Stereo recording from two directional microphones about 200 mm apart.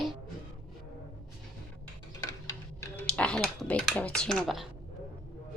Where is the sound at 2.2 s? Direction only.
20° left (ahead or behind).